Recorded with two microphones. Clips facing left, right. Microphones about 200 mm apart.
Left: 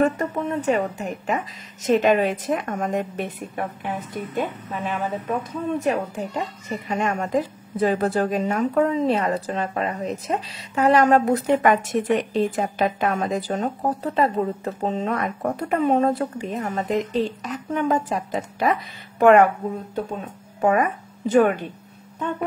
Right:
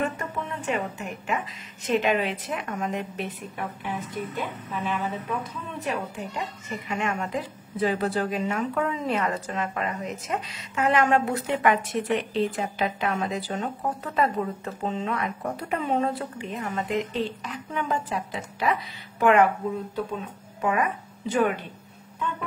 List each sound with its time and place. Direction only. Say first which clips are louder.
0.0 s a sound: left 8 dB; 40° left (ahead or behind)
0.7 s a woman's voice: left 5 dB; 40° left (ahead or behind)
4.4 s a woman's voice: left 5 dB; 45° left (ahead or behind)
20.6 s speech: left 6 dB; 45° left (ahead or behind)